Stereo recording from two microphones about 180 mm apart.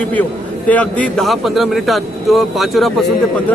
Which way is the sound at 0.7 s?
5° left (ahead or behind).